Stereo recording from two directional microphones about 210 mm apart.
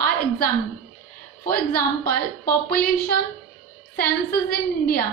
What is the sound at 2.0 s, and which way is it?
A woman's voice, 45° left (ahead or behind).